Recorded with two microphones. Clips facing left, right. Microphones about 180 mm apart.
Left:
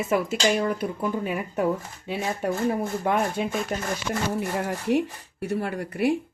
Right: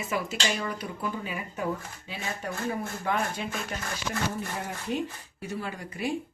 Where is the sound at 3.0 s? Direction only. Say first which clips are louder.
Left 5 dB; 50° left (ahead or behind).